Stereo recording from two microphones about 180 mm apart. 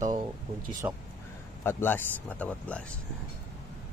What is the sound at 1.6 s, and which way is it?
Speech, 10° left (ahead or behind).